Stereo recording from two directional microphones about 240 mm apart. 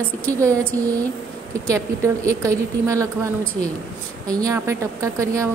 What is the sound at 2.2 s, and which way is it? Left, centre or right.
Speech, centre.